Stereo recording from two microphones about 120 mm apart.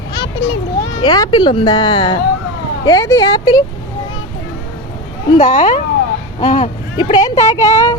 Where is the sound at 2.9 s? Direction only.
30° left (ahead or behind).